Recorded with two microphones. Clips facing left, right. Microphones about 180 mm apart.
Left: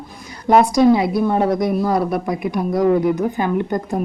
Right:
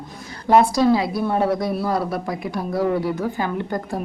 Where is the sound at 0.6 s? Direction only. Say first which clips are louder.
Left 4 dB; 15° left (ahead or behind).